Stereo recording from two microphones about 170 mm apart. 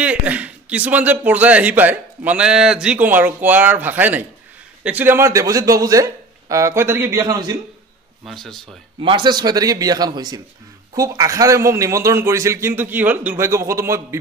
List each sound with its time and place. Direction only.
0.0 s a man's voice: 5° right (ahead or behind); by 7.5 s 20° right (ahead or behind)
8.3 s speech: centre (ahead or behind)
9.0 s a man's voice: 25° right (ahead or behind)